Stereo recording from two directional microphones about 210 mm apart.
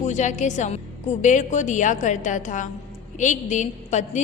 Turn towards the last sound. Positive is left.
turn(degrees=35)  # may be behind; listen again after turning